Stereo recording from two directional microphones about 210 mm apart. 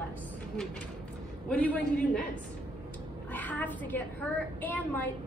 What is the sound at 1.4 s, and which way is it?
Speech, 5° left (ahead or behind).